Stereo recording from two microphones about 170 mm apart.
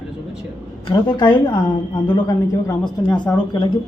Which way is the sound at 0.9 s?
25° left (ahead or behind).